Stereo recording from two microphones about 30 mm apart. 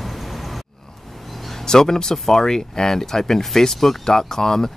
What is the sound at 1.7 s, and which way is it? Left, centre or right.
Speech, left.